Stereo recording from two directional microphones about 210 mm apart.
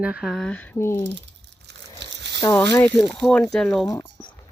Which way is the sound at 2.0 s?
55° right (ahead or behind).